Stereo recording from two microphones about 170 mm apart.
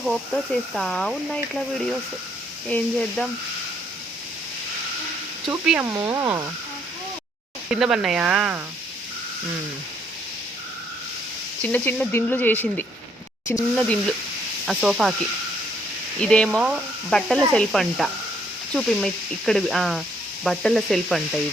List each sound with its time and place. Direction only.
0.0 s speech: centre (ahead or behind)
5.5 s speech: 10° right (ahead or behind)
6.0 s speech: 20° right (ahead or behind)
7.7 s speech: 5° right (ahead or behind)
11.6 s speech: 10° left (ahead or behind)
14.7 s speech: 5° right (ahead or behind)
16.2 s speech: 5° left (ahead or behind)